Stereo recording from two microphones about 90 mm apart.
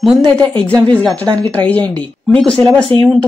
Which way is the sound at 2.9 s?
90° right.